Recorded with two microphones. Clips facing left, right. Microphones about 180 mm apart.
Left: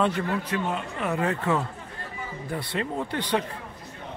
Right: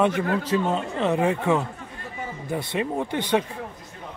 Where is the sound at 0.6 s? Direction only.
30° right (ahead or behind).